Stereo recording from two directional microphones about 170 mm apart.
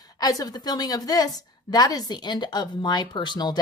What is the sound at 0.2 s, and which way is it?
A woman's voice, 20° left (ahead or behind).